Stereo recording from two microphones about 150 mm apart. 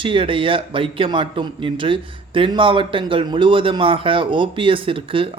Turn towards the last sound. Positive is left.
turn(degrees=-35)  # may be behind; listen again after turning